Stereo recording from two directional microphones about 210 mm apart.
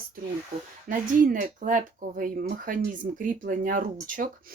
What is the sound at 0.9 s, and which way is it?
Speech, 40° right (ahead or behind).